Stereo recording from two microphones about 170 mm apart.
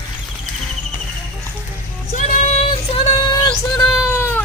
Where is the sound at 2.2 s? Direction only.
45° left (ahead or behind).